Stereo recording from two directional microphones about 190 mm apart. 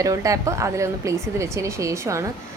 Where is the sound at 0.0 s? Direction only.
15° right (ahead or behind).